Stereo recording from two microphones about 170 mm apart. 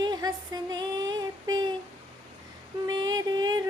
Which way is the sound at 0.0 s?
25° right (ahead or behind).